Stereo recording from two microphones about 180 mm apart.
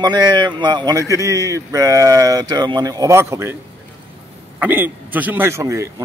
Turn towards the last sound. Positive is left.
turn(degrees=-15)  # may be behind; listen again after turning